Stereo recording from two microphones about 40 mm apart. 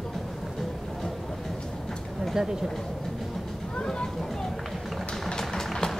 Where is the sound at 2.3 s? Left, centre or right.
Centre.